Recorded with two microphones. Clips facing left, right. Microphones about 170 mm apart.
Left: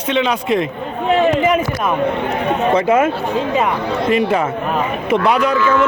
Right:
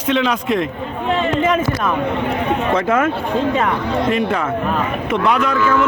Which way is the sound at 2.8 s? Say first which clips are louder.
Left 3 dB; 20° left (ahead or behind).